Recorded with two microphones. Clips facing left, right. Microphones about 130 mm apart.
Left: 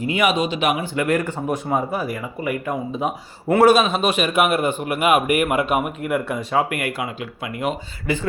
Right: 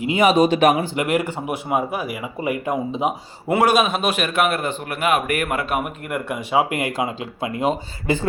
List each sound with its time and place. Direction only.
0.0 s speech: 20° right (ahead or behind)
0.5 s speech: 40° right (ahead or behind)
0.9 s speech: 15° right (ahead or behind)
2.4 s speech: 20° right (ahead or behind)
3.6 s a man's voice: centre (ahead or behind)
6.7 s speech: 20° right (ahead or behind)